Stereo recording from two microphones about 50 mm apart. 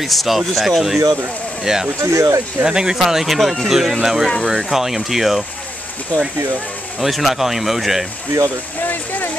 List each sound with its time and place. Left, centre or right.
0.0 s speech: centre
2.0 s speech: right
2.6 s speech: centre
7.0 s speech: centre